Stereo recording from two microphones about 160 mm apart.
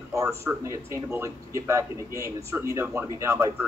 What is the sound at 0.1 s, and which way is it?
A man's voice, 15° right (ahead or behind).